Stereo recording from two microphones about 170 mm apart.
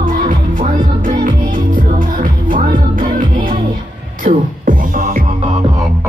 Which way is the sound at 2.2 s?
50° right (ahead or behind).